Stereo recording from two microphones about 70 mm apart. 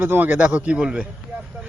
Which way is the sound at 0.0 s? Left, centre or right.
Right.